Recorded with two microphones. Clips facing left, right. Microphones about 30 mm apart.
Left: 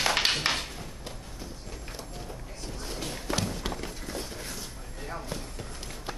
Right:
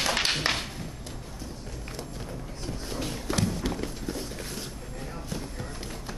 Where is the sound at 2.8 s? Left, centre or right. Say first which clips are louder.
Right 1 dB; centre.